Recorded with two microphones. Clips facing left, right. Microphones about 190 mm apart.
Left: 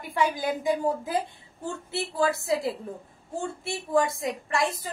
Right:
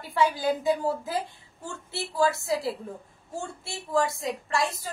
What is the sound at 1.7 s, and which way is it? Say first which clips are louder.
A woman's voice: left 4 dB; 20° left (ahead or behind).